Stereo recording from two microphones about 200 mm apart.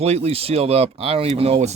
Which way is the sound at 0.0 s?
30° right (ahead or behind).